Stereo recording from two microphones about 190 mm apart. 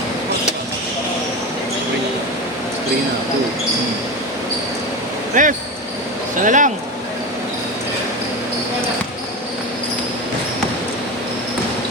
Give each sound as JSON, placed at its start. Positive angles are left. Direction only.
{"t": 5.3, "sound": "speech", "side_deg": -45}